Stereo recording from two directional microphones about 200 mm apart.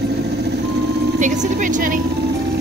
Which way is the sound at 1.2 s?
40° right (ahead or behind).